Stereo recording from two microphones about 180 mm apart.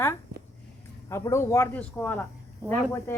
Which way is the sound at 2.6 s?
15° right (ahead or behind).